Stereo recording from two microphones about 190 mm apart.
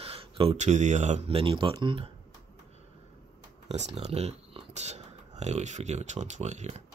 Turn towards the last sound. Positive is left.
turn(degrees=-35)  # may be behind; listen again after turning